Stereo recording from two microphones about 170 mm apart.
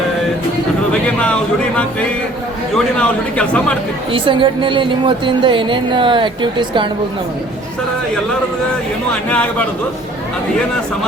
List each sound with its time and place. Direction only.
1.0 s a sound: 5° left (ahead or behind)
2.7 s a man's voice: 5° left (ahead or behind)
4.1 s a woman's voice: 30° right (ahead or behind)
9.3 s speech: 5° left (ahead or behind)